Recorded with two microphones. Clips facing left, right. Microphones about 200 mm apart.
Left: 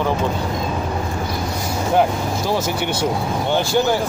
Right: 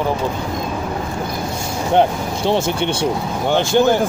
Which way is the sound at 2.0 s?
25° right (ahead or behind).